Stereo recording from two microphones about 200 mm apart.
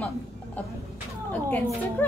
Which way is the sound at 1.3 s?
10° left (ahead or behind).